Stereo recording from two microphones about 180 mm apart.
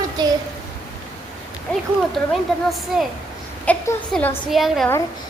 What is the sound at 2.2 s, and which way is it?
Speech, centre (ahead or behind).